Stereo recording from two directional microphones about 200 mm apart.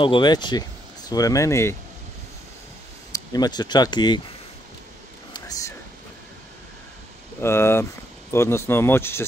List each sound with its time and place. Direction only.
0.0 s speech: 25° left (ahead or behind)
3.1 s speech: 20° left (ahead or behind)
5.3 s a sound: 15° left (ahead or behind)
7.4 s speech: 10° left (ahead or behind)